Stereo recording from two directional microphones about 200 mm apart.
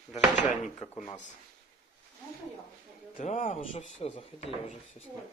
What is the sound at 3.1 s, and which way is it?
Speech, 40° left (ahead or behind).